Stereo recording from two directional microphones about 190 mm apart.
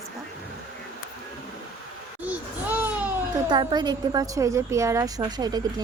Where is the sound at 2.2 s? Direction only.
10° right (ahead or behind).